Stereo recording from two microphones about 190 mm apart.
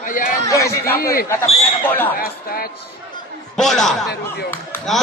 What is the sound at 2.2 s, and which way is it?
Speech, 50° left (ahead or behind).